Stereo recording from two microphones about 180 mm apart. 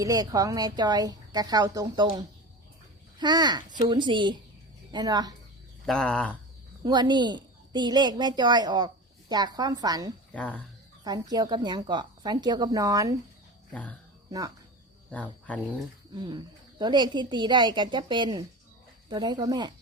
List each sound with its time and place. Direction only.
0.0 s a woman's voice: 20° right (ahead or behind)
5.8 s speech: 5° left (ahead or behind)
6.8 s a woman's voice: 25° right (ahead or behind)
10.3 s speech: 10° left (ahead or behind)
11.0 s a woman's voice: 20° right (ahead or behind)
14.3 s speech: 20° right (ahead or behind)
15.1 s speech: 10° left (ahead or behind)
16.1 s a woman's voice: 25° right (ahead or behind)